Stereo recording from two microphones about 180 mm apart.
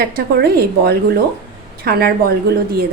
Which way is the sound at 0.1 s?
60° right (ahead or behind).